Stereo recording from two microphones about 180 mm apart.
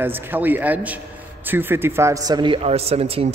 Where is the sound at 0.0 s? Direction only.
10° right (ahead or behind).